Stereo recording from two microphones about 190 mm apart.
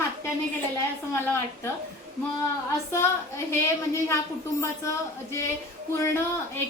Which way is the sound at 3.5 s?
15° left (ahead or behind).